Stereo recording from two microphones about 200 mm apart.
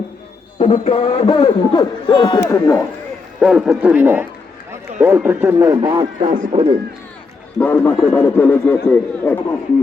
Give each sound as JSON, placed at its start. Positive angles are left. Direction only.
{"t": 0.6, "sound": "a man's voice", "side_deg": 30}
{"t": 3.4, "sound": "speech", "side_deg": -5}
{"t": 7.6, "sound": "a man's voice", "side_deg": 10}